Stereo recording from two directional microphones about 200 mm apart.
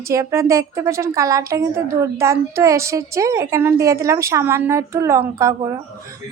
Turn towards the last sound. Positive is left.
turn(degrees=-15)  # may be behind; listen again after turning